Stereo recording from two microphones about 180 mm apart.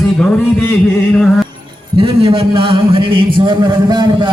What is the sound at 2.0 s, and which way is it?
A man's voice, 30° right (ahead or behind).